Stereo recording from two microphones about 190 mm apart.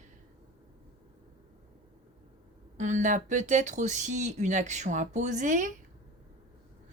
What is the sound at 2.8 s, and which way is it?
Speech, 40° right (ahead or behind).